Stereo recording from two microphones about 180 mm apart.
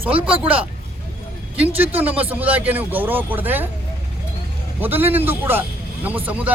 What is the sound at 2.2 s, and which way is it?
A man's voice, 10° right (ahead or behind).